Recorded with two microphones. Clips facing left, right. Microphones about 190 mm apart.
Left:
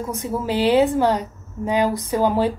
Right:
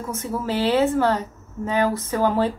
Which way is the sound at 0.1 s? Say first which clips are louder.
Left 1 dB; 15° left (ahead or behind).